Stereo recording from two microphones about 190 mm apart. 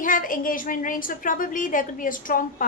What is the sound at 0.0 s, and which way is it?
A woman's voice, 45° left (ahead or behind).